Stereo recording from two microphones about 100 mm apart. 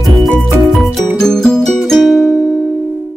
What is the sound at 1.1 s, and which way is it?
Music, 5° left (ahead or behind).